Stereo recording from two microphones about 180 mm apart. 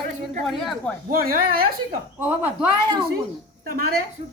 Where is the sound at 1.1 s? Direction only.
55° right (ahead or behind).